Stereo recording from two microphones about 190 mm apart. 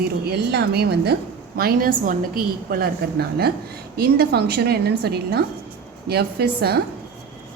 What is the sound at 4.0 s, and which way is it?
A woman's voice, 55° right (ahead or behind).